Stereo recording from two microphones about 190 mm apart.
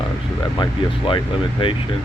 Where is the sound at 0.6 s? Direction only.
25° left (ahead or behind).